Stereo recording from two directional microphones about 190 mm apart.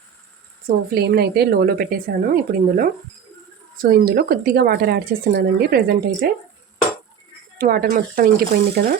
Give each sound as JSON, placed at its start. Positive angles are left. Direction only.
{"t": 0.9, "sound": "speech", "side_deg": -55}
{"t": 7.6, "sound": "speech", "side_deg": -55}